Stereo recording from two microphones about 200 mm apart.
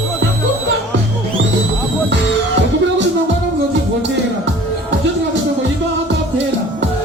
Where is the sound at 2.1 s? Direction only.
60° right (ahead or behind).